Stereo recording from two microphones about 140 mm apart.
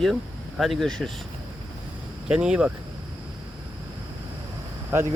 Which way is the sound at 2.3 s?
5° right (ahead or behind).